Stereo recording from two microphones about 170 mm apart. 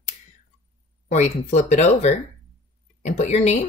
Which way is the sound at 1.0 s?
45° left (ahead or behind).